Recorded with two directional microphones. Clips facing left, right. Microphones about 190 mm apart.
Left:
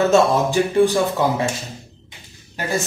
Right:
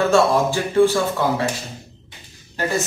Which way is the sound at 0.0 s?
20° left (ahead or behind).